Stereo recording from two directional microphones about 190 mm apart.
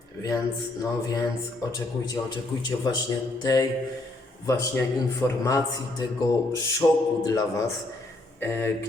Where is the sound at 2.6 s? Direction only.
20° left (ahead or behind).